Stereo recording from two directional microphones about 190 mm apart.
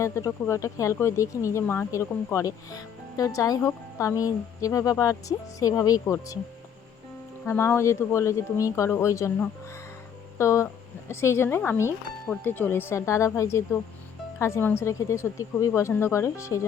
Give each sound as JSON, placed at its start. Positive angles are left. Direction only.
{"t": 0.0, "sound": "speech", "side_deg": 15}
{"t": 7.4, "sound": "speech", "side_deg": 15}